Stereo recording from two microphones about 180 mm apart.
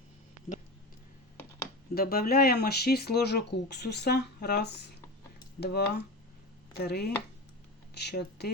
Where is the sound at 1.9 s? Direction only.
55° left (ahead or behind).